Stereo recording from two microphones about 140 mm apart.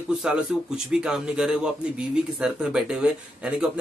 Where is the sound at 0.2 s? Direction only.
5° right (ahead or behind).